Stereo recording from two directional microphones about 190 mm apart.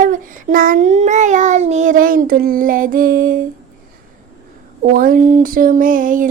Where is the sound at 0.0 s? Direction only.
45° right (ahead or behind).